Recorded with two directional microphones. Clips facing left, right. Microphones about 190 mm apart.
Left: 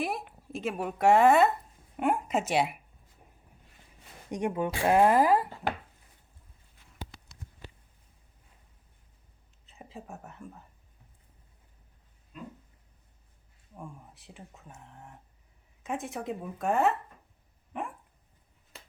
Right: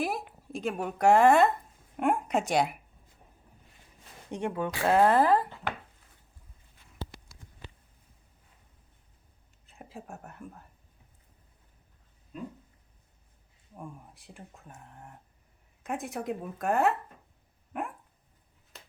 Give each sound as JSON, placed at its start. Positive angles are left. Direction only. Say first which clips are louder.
{"t": 0.0, "sound": "a woman's voice", "louder": "right 1 dB", "side_deg": 0}
{"t": 4.3, "sound": "speech", "louder": "left 2 dB", "side_deg": 15}
{"t": 9.7, "sound": "speech", "louder": "even", "side_deg": 0}
{"t": 13.7, "sound": "speech", "louder": "right 1 dB", "side_deg": 0}